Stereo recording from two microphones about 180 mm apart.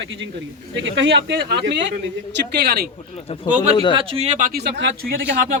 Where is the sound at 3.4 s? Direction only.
45° right (ahead or behind).